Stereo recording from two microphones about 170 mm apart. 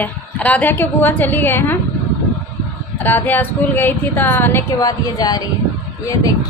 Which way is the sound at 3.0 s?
10° left (ahead or behind).